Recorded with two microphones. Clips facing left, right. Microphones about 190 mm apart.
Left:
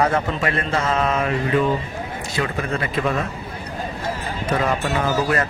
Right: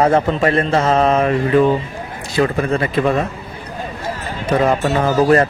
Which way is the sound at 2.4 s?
35° right (ahead or behind).